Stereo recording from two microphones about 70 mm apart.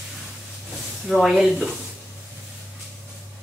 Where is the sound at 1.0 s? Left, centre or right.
Centre.